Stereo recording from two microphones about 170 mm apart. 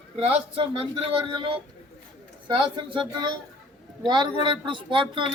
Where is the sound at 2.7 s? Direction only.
30° right (ahead or behind).